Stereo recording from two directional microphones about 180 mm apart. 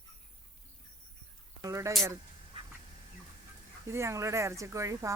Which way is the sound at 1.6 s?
20° right (ahead or behind).